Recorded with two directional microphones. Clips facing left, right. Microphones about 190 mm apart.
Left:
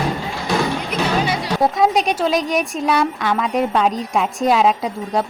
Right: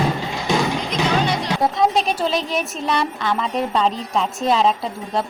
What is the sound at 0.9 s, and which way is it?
Music, 10° left (ahead or behind).